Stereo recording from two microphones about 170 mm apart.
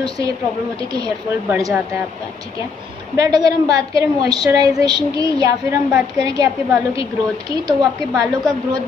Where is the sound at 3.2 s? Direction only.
25° right (ahead or behind).